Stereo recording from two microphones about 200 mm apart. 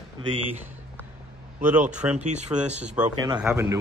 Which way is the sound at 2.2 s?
35° right (ahead or behind).